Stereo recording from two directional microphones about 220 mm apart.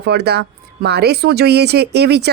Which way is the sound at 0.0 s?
50° right (ahead or behind).